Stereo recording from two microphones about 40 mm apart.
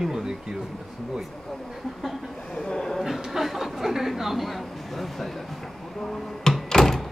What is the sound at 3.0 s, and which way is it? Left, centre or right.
Speech, centre.